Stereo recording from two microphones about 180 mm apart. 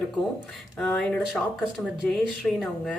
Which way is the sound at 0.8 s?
5° left (ahead or behind).